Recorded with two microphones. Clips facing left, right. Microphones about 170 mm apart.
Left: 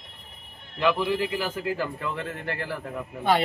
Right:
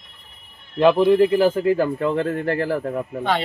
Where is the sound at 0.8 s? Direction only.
45° right (ahead or behind).